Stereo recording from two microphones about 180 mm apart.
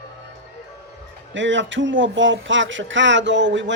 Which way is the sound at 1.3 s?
90° right.